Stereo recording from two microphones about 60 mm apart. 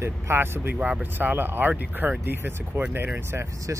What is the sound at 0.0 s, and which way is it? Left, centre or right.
Speech, right.